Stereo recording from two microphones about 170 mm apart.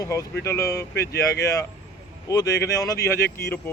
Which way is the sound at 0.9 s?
70° left (ahead or behind).